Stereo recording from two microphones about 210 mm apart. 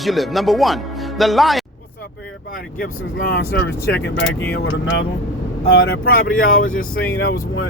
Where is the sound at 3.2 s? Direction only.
50° left (ahead or behind).